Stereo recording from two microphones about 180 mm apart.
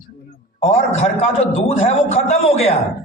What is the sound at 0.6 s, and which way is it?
A man's voice, 35° left (ahead or behind).